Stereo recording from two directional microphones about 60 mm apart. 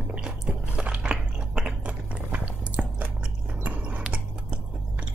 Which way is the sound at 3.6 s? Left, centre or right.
Right.